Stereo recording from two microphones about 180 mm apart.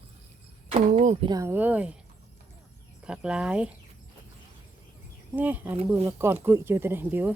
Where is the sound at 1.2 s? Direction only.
20° right (ahead or behind).